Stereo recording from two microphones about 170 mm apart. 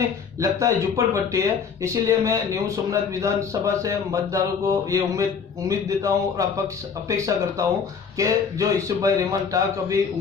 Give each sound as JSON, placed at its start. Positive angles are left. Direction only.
{"t": 0.4, "sound": "speech", "side_deg": -20}